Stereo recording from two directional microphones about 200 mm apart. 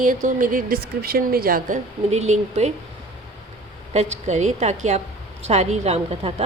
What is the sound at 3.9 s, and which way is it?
Speech, 30° right (ahead or behind).